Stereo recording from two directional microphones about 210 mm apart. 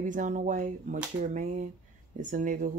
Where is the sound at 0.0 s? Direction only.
35° right (ahead or behind).